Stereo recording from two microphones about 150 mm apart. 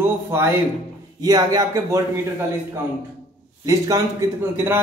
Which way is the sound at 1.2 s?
25° right (ahead or behind).